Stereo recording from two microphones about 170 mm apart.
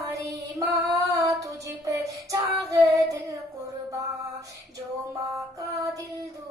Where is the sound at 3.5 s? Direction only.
20° right (ahead or behind).